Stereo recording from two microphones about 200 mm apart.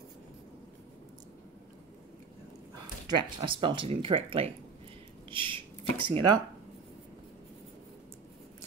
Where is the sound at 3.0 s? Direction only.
25° right (ahead or behind).